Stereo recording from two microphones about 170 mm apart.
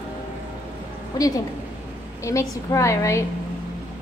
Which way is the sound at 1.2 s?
20° left (ahead or behind).